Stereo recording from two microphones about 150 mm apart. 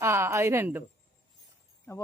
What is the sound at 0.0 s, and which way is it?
Speech, 15° right (ahead or behind).